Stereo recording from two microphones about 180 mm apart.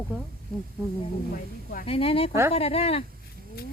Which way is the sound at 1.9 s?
30° left (ahead or behind).